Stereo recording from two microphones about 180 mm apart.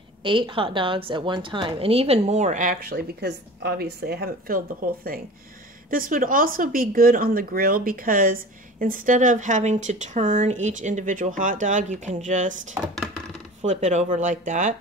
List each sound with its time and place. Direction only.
0.2 s a woman's voice: 30° right (ahead or behind)
12.8 s speech: 10° right (ahead or behind)
13.6 s speech: 40° right (ahead or behind)